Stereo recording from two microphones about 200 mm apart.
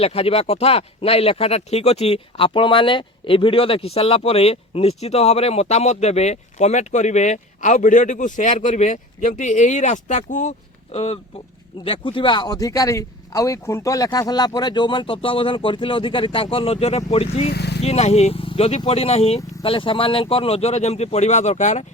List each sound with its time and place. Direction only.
0.0 s speech: 30° left (ahead or behind)
17.5 s speech: 55° left (ahead or behind)
17.8 s speech: 30° left (ahead or behind)